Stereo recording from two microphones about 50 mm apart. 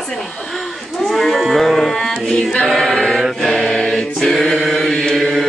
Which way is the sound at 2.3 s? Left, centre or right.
Centre.